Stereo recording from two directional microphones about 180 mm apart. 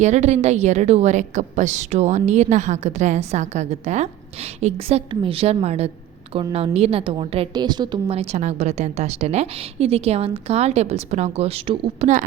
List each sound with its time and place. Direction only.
0.0 s a woman's voice: 40° right (ahead or behind)